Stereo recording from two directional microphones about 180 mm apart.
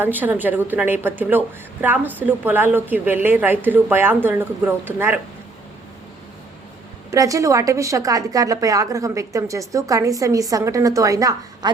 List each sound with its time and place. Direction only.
0.0 s speech: 10° right (ahead or behind)
7.1 s a woman's voice: 20° right (ahead or behind)